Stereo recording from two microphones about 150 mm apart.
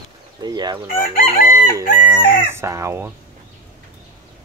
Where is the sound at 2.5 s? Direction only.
15° right (ahead or behind).